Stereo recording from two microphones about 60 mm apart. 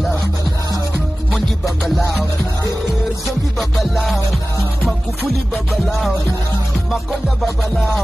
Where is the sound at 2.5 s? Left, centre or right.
Left.